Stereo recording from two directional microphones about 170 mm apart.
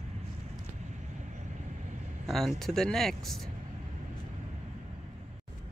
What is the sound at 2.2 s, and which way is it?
Speech, centre (ahead or behind).